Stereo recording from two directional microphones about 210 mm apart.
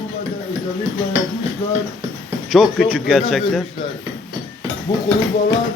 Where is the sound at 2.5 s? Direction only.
5° right (ahead or behind).